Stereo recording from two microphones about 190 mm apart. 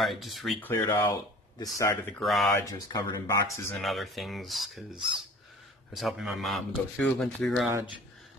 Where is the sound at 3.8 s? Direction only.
Centre (ahead or behind).